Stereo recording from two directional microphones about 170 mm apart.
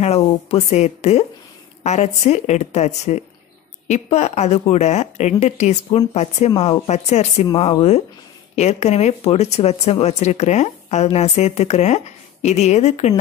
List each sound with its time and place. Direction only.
0.0 s speech: 40° left (ahead or behind)